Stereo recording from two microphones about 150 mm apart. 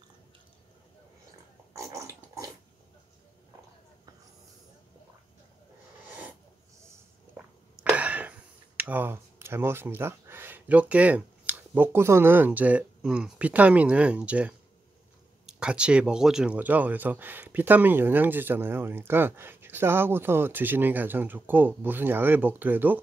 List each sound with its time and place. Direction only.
1.7 s dog: 20° right (ahead or behind)
7.9 s speech: 10° right (ahead or behind)